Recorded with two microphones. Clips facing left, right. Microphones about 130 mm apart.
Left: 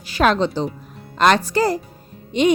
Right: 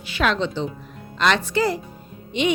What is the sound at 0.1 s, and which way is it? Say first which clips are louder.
A woman's voice: left 5 dB; 40° left (ahead or behind).